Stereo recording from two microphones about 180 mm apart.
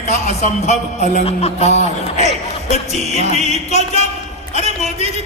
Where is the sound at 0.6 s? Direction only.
40° left (ahead or behind).